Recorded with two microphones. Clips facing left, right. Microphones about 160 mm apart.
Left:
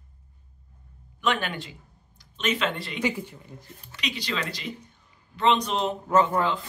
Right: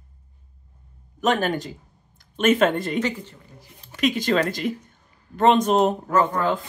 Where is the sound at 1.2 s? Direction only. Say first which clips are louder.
Right 6 dB; 40° right (ahead or behind).